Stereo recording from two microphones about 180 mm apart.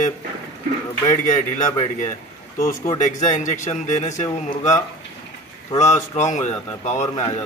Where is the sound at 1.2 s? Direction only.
45° left (ahead or behind).